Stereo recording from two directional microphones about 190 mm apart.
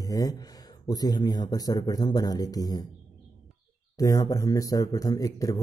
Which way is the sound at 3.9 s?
20° left (ahead or behind).